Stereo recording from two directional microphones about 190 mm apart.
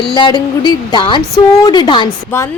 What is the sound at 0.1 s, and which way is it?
A woman's voice, 25° left (ahead or behind).